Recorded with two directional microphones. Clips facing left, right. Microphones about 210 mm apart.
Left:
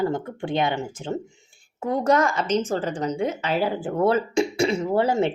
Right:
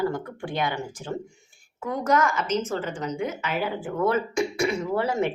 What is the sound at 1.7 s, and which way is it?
Speech, 35° left (ahead or behind).